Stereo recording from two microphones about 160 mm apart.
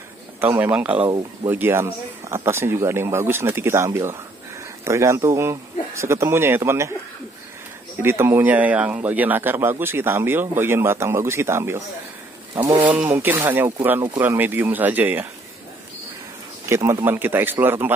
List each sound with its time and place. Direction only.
0.4 s a man's voice: 15° right (ahead or behind)
0.9 s speech: 30° right (ahead or behind)
1.5 s a man's voice: 15° right (ahead or behind)
8.0 s a man's voice: 15° right (ahead or behind)
16.6 s a man's voice: 15° right (ahead or behind)